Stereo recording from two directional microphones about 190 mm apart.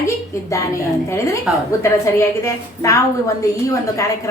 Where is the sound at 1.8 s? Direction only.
15° left (ahead or behind).